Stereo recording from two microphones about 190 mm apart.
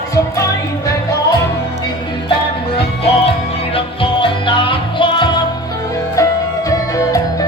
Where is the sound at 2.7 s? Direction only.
30° left (ahead or behind).